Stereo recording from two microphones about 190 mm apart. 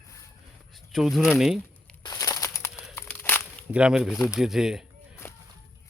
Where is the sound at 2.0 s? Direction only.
20° left (ahead or behind).